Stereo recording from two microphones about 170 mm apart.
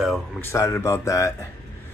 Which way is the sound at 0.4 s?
15° left (ahead or behind).